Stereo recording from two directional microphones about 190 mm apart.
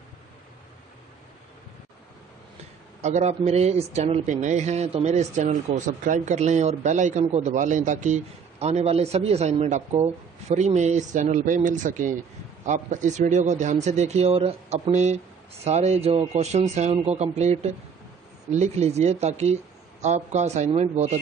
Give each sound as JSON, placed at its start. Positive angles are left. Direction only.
{"t": 3.0, "sound": "a man's voice", "side_deg": -35}